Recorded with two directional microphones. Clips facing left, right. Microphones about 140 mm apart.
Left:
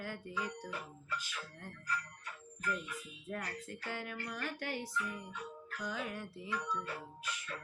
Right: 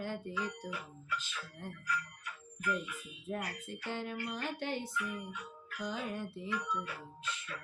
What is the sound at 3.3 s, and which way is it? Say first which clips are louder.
Music: right 3 dB; 20° right (ahead or behind).